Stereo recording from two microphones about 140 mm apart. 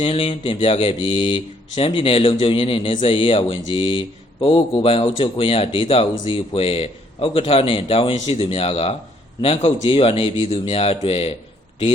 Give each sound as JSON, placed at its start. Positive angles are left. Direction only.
{"t": 0.0, "sound": "speech", "side_deg": 45}